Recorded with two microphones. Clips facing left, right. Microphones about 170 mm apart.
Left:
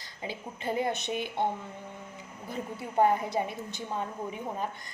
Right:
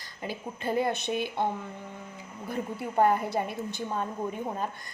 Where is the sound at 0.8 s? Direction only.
15° left (ahead or behind).